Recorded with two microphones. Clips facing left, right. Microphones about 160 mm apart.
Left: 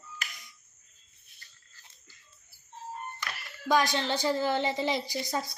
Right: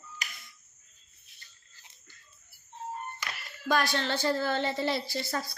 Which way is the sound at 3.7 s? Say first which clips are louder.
Left 2 dB; 15° left (ahead or behind).